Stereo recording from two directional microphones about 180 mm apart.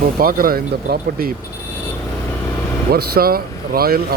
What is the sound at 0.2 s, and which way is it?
Speech, 55° right (ahead or behind).